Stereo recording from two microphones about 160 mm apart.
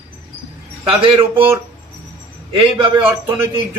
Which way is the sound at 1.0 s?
35° right (ahead or behind).